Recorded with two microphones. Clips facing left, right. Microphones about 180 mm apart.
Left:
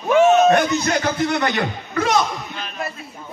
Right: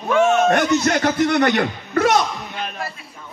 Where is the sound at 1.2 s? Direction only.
60° right (ahead or behind).